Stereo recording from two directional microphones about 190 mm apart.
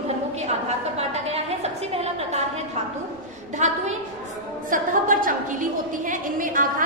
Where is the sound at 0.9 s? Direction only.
35° right (ahead or behind).